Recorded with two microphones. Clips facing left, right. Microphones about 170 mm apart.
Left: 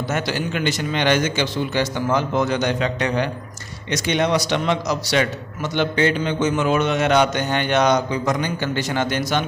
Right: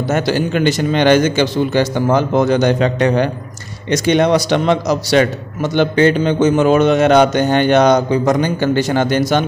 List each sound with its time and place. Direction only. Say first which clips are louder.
0.1 s a man's voice: right 9 dB; 40° right (ahead or behind)